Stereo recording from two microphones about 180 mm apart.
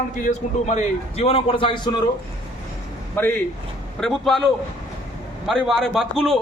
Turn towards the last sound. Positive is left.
turn(degrees=0)  # may be behind; listen again after turning